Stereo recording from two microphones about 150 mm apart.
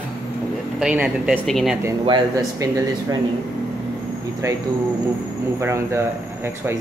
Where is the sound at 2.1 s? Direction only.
30° right (ahead or behind).